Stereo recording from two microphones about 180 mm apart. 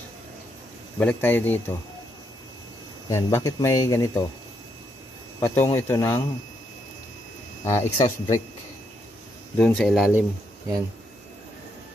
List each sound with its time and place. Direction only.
0.9 s speech: 10° left (ahead or behind)
3.1 s speech: 15° left (ahead or behind)
5.4 s speech: 15° left (ahead or behind)
7.6 s speech: 15° left (ahead or behind)
9.6 s speech: 5° left (ahead or behind)